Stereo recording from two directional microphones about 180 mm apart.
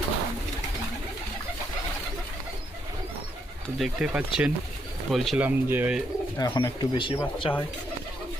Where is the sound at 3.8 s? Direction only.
5° right (ahead or behind).